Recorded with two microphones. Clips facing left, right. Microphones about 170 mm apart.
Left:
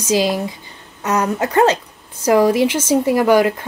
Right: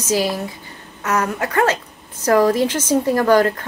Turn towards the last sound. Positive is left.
turn(degrees=10)  # may be behind; listen again after turning